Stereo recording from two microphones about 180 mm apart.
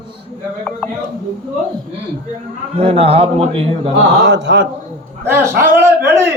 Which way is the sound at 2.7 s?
35° right (ahead or behind).